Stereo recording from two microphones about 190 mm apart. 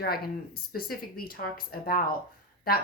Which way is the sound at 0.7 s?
50° left (ahead or behind).